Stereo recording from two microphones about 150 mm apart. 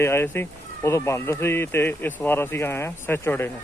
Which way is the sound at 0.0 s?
15° left (ahead or behind).